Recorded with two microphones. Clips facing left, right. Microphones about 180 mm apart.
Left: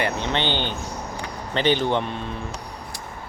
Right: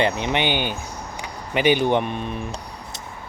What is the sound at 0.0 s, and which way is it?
Speech, 15° right (ahead or behind).